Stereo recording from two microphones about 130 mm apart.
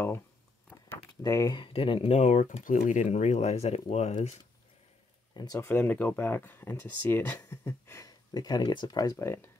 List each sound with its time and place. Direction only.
0.7 s a sound: 20° left (ahead or behind)
1.5 s speech: 40° left (ahead or behind)
5.3 s speech: 30° left (ahead or behind)
5.7 s speech: 15° left (ahead or behind)